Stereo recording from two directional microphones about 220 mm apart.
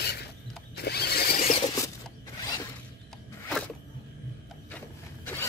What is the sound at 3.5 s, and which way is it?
Music, 5° left (ahead or behind).